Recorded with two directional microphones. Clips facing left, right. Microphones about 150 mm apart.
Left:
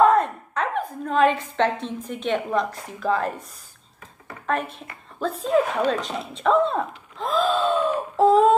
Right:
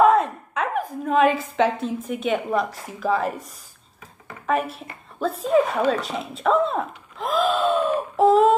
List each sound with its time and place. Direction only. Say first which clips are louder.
0.0 s a woman's voice: right 1 dB; 5° right (ahead or behind)